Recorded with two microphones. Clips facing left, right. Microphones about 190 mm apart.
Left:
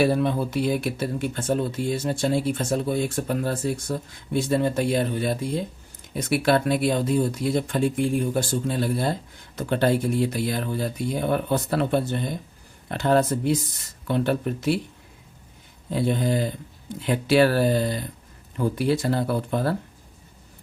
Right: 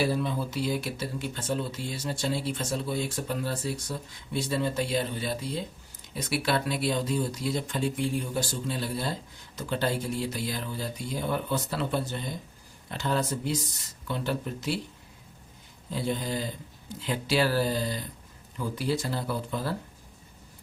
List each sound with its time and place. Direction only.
0.0 s speech: 60° left (ahead or behind)
15.9 s speech: 60° left (ahead or behind)